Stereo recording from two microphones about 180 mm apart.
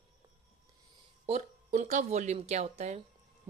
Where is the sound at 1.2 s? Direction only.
40° right (ahead or behind).